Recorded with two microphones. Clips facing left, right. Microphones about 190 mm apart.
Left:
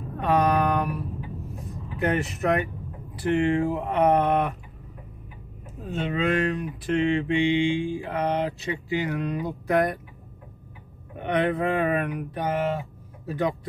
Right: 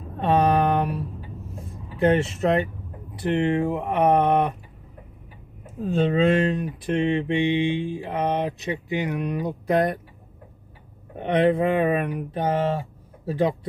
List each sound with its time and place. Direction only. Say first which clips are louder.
0.2 s a sound: right 2 dB; 25° right (ahead or behind)
2.0 s mantra: right 5 dB; 25° right (ahead or behind)
5.9 s mantra: right 6 dB; 30° right (ahead or behind)
11.1 s mantra: right 4 dB; 25° right (ahead or behind)